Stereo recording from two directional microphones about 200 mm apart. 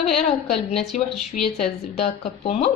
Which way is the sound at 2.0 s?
30° left (ahead or behind).